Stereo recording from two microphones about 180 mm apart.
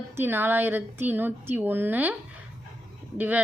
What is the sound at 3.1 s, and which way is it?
Speech, 10° right (ahead or behind).